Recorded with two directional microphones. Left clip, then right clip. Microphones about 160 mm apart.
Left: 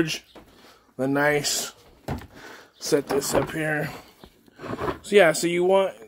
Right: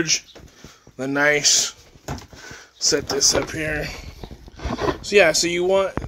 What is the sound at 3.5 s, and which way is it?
Speech, 30° left (ahead or behind).